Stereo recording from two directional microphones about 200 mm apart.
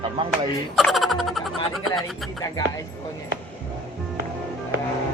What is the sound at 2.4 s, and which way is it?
Speech, 20° left (ahead or behind).